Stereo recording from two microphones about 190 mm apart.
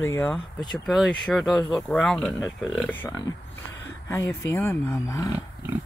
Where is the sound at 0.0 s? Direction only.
10° left (ahead or behind).